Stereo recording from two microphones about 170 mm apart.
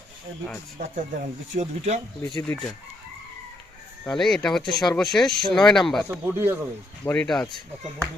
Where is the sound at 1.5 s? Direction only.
40° right (ahead or behind).